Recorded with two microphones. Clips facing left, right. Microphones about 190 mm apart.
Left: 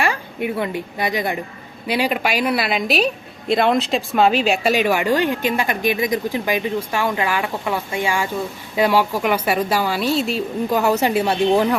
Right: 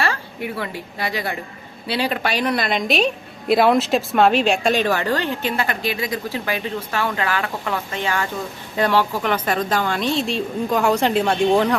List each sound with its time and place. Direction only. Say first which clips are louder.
0.0 s a woman's voice: left 3 dB; 20° left (ahead or behind)